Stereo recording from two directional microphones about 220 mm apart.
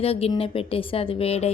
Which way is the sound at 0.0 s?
25° left (ahead or behind).